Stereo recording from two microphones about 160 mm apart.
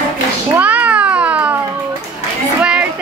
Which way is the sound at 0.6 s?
10° right (ahead or behind).